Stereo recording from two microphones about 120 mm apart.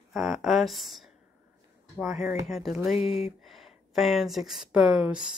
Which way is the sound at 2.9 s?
60° left (ahead or behind).